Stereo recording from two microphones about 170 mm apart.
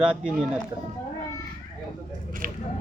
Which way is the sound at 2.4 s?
50° right (ahead or behind).